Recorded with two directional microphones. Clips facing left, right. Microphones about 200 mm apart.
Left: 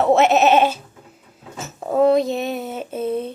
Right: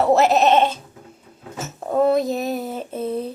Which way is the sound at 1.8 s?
Centre (ahead or behind).